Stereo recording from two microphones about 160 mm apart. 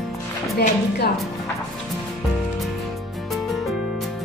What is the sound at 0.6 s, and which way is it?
Speech, 90° left.